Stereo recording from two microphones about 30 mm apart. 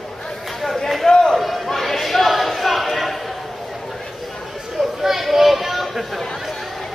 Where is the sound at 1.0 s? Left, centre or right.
Centre.